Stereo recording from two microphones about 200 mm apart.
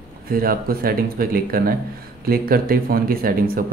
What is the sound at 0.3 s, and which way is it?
Speech, 50° right (ahead or behind).